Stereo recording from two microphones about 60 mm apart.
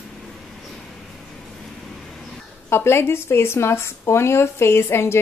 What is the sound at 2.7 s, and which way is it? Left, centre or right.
Speech, left.